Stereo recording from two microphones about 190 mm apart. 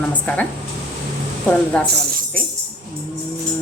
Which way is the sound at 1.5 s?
5° left (ahead or behind).